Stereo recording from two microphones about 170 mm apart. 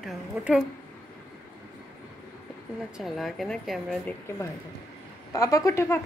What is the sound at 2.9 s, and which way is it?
A woman's voice, centre (ahead or behind).